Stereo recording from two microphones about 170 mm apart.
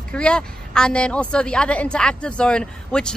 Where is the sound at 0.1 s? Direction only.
5° left (ahead or behind).